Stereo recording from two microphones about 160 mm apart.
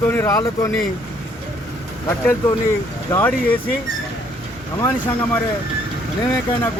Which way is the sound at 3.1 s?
10° left (ahead or behind).